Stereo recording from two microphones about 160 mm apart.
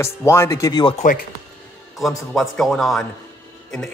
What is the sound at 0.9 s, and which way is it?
Speech, 55° left (ahead or behind).